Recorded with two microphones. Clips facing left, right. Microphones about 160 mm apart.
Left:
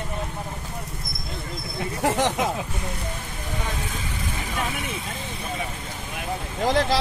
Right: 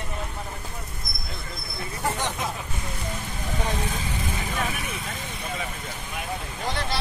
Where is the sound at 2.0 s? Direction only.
80° left.